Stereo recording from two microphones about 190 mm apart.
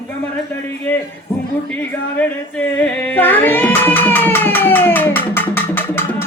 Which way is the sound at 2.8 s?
10° left (ahead or behind).